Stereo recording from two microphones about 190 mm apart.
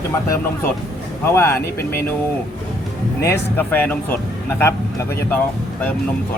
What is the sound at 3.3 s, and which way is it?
Speech, 10° left (ahead or behind).